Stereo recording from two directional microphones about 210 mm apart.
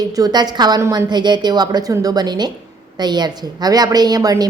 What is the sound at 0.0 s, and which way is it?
A woman's voice, 15° right (ahead or behind).